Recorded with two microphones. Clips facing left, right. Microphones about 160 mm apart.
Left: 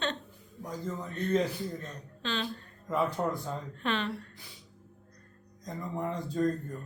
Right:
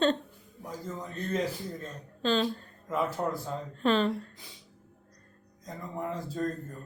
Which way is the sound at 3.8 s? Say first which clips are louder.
Right 8 dB; 35° right (ahead or behind).